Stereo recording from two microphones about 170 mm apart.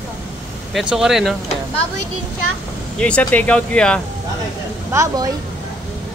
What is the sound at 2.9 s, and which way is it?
Speech, 5° left (ahead or behind).